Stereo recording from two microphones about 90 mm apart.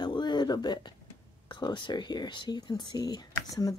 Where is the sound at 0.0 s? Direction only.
55° left (ahead or behind).